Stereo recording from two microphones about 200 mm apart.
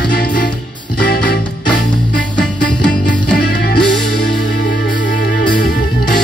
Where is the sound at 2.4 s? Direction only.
5° left (ahead or behind).